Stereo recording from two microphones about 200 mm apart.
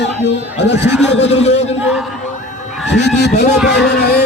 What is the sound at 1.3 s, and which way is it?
Speech, 30° left (ahead or behind).